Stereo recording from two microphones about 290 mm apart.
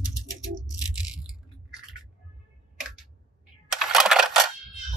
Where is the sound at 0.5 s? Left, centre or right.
Right.